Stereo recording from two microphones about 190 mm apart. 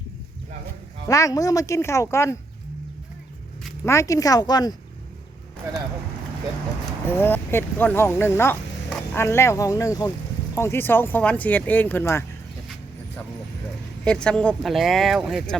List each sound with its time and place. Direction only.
1.0 s speech: 15° left (ahead or behind)
3.8 s speech: 15° left (ahead or behind)
7.1 s speech: 10° left (ahead or behind)
14.0 s speech: 5° left (ahead or behind)